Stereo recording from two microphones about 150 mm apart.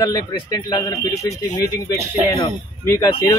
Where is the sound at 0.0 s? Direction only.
25° left (ahead or behind).